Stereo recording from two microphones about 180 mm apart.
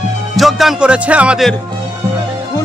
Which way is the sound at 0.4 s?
Centre (ahead or behind).